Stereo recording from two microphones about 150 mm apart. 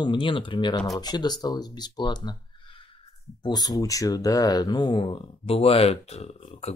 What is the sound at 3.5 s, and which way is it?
Speech, 25° left (ahead or behind).